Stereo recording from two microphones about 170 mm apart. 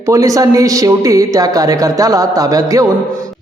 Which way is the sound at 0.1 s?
20° right (ahead or behind).